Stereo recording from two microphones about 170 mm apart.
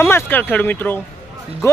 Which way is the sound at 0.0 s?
10° left (ahead or behind).